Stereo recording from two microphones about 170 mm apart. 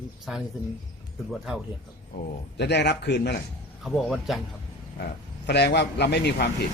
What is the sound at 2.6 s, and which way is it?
Speech, 85° left.